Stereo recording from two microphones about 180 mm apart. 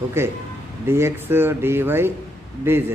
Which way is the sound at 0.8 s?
15° right (ahead or behind).